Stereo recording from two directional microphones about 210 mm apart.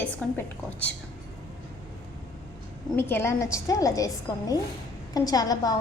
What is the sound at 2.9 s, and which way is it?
A woman's voice, 10° left (ahead or behind).